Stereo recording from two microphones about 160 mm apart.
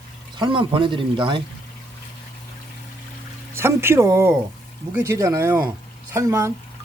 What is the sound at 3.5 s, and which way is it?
Speech, 15° right (ahead or behind).